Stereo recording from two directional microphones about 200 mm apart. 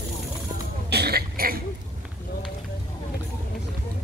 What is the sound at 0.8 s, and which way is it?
Cough, 55° right (ahead or behind).